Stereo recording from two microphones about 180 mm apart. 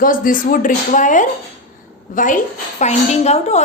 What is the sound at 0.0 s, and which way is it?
A woman's voice, 50° left (ahead or behind).